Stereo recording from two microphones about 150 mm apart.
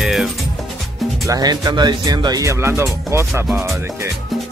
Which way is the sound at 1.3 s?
25° right (ahead or behind).